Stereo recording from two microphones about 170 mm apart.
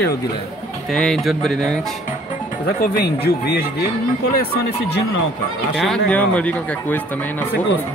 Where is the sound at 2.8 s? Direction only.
65° left (ahead or behind).